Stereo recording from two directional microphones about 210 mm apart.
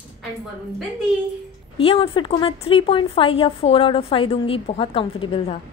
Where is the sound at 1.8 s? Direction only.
25° left (ahead or behind).